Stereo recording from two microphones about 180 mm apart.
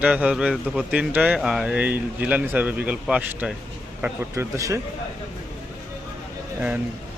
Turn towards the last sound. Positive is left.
turn(degrees=-10)  # may be behind; listen again after turning